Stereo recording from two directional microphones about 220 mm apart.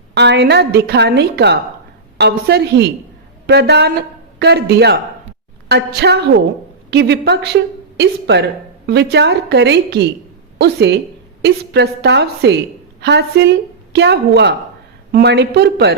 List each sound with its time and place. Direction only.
0.1 s a woman's voice: 50° right (ahead or behind)